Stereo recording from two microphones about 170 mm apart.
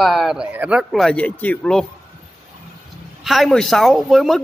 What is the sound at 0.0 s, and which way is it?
Speech, centre (ahead or behind).